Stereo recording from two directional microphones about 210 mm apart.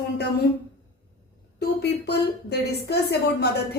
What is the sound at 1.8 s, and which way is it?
A woman's voice, 50° left (ahead or behind).